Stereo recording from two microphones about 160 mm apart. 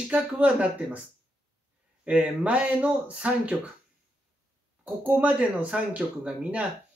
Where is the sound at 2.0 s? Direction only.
10° right (ahead or behind).